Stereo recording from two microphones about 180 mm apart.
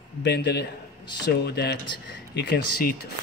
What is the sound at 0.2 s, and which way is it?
Speech, 70° left (ahead or behind).